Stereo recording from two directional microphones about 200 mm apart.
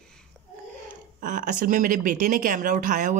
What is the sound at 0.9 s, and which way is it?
Speech, 40° right (ahead or behind).